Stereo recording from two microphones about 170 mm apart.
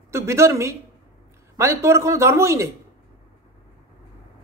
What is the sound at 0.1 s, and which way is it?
A woman's voice, 15° right (ahead or behind).